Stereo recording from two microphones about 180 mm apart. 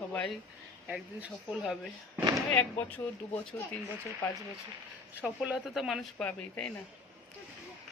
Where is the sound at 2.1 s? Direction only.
20° right (ahead or behind).